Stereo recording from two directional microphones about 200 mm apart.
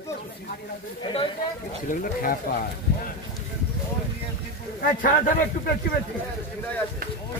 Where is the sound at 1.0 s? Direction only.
25° left (ahead or behind).